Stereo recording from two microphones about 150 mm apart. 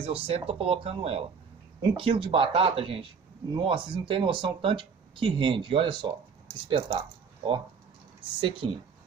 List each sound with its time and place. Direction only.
0.0 s speech: 40° right (ahead or behind)